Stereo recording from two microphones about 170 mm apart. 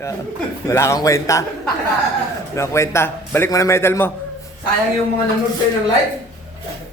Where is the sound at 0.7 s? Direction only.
15° left (ahead or behind).